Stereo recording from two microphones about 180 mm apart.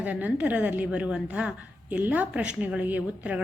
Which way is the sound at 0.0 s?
10° right (ahead or behind).